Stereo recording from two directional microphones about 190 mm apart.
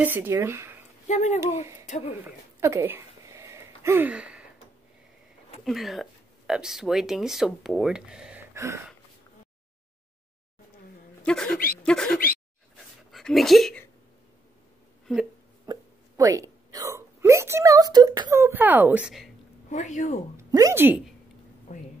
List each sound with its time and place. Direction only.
0.0 s speech: 10° right (ahead or behind)
1.0 s speech: 40° left (ahead or behind)
2.2 s a sound: 15° right (ahead or behind)
5.6 s speech: centre (ahead or behind)
8.5 s speech: 15° right (ahead or behind)
11.2 s speech: 5° left (ahead or behind)
12.7 s a sound: centre (ahead or behind)
15.6 s hiccup: 20° right (ahead or behind)
19.7 s speech: 40° left (ahead or behind)
20.3 s a woman's voice: 15° right (ahead or behind)
21.7 s speech: 40° left (ahead or behind)